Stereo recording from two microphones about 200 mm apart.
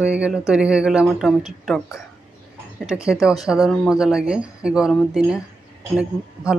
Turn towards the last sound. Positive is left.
turn(degrees=-5)  # may be behind; listen again after turning